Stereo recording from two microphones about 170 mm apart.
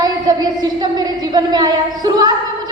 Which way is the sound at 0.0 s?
25° right (ahead or behind).